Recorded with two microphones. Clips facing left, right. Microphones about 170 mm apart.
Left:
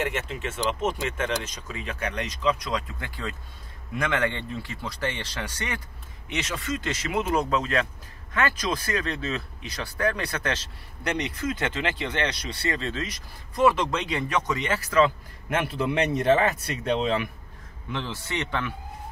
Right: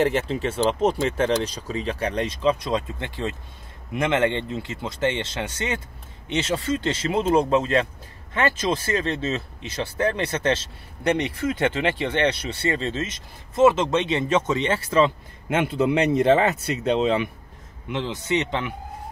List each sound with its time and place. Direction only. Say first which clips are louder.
0.0 s speech: right 8 dB; 35° right (ahead or behind)